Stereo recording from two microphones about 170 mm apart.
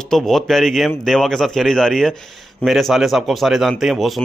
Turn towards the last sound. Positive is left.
turn(degrees=0)  # may be behind; listen again after turning